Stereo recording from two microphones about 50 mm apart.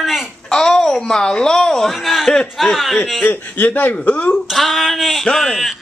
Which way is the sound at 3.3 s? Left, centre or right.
Left.